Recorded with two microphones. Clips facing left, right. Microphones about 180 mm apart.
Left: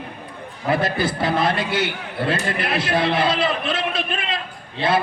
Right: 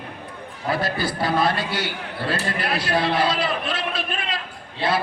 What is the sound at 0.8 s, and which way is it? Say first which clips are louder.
A man's voice: left 3 dB; 20° left (ahead or behind).